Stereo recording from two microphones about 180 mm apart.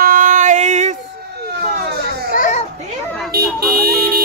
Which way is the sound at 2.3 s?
45° left (ahead or behind).